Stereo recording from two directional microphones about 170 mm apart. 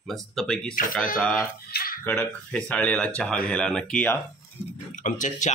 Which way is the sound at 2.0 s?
5° left (ahead or behind).